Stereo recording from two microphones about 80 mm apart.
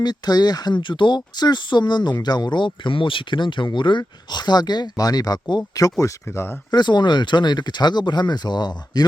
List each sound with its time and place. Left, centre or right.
0.0 s speech: left
6.2 s speech: left
6.7 s speech: left